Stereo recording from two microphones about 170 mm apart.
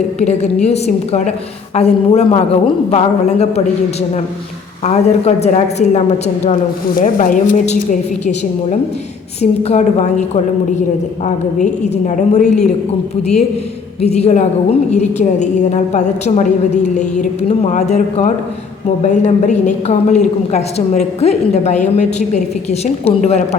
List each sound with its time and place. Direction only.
0.2 s a woman's voice: 40° left (ahead or behind)
4.8 s a woman's voice: 40° left (ahead or behind)
11.5 s a woman's voice: 45° left (ahead or behind)
14.0 s a woman's voice: 40° left (ahead or behind)